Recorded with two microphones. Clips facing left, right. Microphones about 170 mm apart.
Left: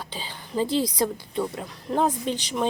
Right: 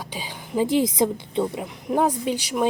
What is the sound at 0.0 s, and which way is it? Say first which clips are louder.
Speech: right 3 dB; 15° right (ahead or behind).